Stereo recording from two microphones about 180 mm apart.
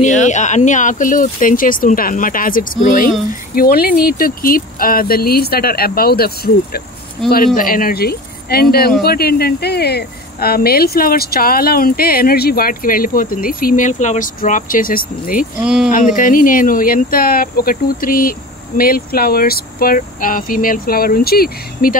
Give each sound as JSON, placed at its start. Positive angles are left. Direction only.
{"t": 0.0, "sound": "a woman's voice", "side_deg": 40}
{"t": 15.6, "sound": "speech", "side_deg": -5}
{"t": 15.9, "sound": "speech", "side_deg": 45}